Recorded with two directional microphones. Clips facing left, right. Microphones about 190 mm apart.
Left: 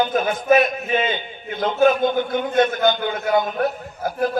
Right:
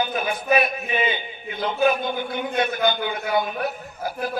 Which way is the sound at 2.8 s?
50° left (ahead or behind).